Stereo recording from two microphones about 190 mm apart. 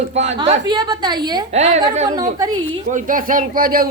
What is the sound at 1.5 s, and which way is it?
Speech, 35° right (ahead or behind).